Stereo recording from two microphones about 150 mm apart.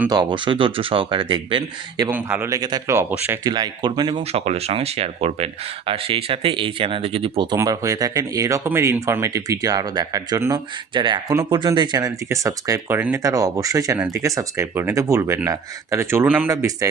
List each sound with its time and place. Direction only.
0.1 s speech: 30° right (ahead or behind)
2.0 s a man's voice: 10° right (ahead or behind)
2.6 s speech: 25° right (ahead or behind)
3.4 s speech: 25° right (ahead or behind)
4.2 s speech: 45° right (ahead or behind)
7.5 s speech: 20° right (ahead or behind)
10.9 s a man's voice: 30° right (ahead or behind)